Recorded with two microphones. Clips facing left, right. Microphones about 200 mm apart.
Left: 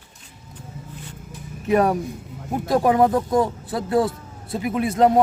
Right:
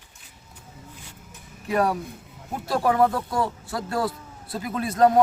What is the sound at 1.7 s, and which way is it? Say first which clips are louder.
Speech: left 5 dB; 20° left (ahead or behind).